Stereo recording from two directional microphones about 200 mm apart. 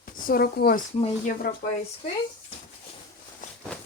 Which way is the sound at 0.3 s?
50° left (ahead or behind).